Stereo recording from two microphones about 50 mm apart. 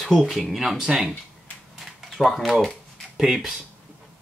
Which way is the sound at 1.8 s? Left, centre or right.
Centre.